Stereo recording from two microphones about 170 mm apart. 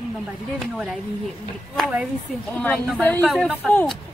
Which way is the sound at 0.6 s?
Centre (ahead or behind).